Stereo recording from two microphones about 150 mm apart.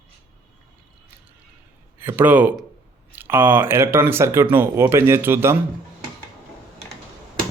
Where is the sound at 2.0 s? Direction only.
15° right (ahead or behind).